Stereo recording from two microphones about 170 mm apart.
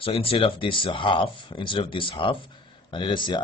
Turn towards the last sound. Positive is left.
turn(degrees=30)  # may be behind; listen again after turning